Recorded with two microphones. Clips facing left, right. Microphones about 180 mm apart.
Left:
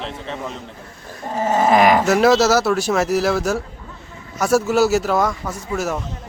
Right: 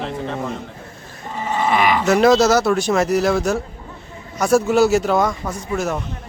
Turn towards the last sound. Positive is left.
turn(degrees=5)  # may be behind; listen again after turning